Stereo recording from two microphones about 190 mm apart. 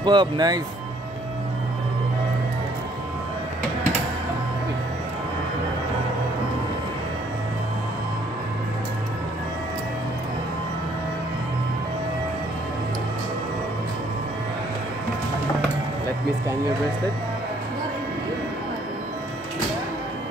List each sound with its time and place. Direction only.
0.0 s speech: 25° right (ahead or behind)